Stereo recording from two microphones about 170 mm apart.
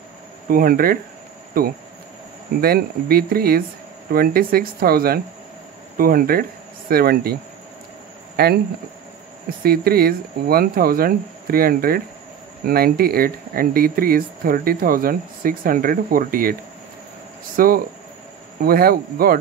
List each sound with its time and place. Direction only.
0.5 s speech: 55° right (ahead or behind)
8.4 s speech: 65° right (ahead or behind)
9.6 s speech: 65° right (ahead or behind)
17.6 s speech: 55° right (ahead or behind)